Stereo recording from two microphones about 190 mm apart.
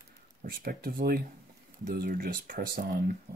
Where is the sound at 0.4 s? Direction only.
50° right (ahead or behind).